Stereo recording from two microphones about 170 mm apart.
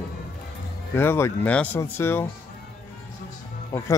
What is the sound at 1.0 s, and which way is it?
Speech, 15° left (ahead or behind).